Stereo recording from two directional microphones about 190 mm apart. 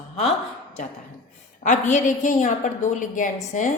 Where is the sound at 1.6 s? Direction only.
40° left (ahead or behind).